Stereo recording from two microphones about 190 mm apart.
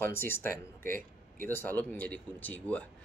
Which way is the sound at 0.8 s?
45° right (ahead or behind).